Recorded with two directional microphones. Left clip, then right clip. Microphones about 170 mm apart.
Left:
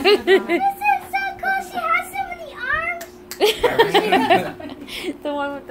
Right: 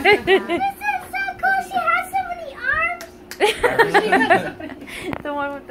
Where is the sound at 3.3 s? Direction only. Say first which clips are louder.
Even; 15° left (ahead or behind).